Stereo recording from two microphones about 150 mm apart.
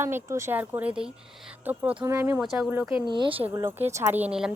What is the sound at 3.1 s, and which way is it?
Speech, 35° right (ahead or behind).